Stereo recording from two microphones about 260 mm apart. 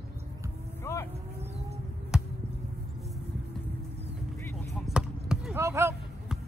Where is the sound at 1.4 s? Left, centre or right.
Right.